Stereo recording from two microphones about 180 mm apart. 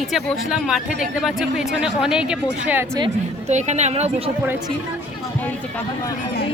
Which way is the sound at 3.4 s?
40° right (ahead or behind).